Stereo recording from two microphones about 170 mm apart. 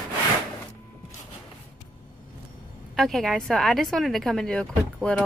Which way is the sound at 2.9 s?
Centre (ahead or behind).